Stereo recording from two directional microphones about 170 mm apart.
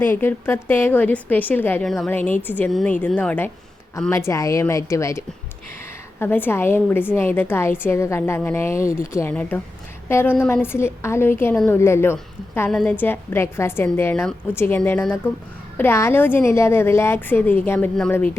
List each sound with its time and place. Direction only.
0.0 s a woman's voice: 10° left (ahead or behind)